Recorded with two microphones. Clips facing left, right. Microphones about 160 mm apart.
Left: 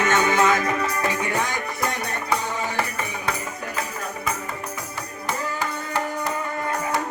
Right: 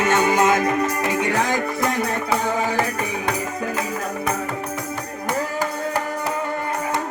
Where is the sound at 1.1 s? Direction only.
80° right.